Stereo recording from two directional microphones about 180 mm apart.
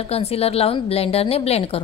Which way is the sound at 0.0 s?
35° left (ahead or behind).